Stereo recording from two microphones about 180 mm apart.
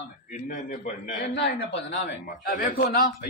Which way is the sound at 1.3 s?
85° left.